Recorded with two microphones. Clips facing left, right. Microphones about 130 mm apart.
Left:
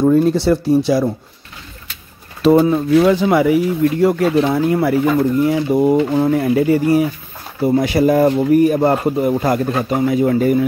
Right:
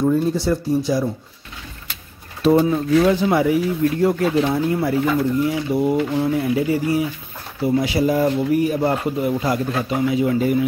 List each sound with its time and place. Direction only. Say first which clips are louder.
0.0 s speech: left 5 dB; 70° left (ahead or behind)
2.4 s speech: left 4 dB; 90° left; by 4.9 s 75° left (ahead or behind)
5.4 s speech: left 5 dB; 50° left (ahead or behind)